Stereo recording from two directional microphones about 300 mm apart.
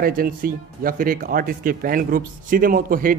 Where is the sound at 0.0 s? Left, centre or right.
Right.